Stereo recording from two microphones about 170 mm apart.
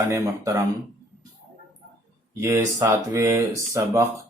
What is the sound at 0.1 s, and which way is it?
Speech, 20° right (ahead or behind).